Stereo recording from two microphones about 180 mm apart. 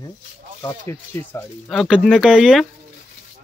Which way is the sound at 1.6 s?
Centre (ahead or behind).